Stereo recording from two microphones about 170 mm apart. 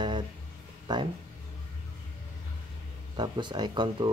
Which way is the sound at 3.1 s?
25° right (ahead or behind).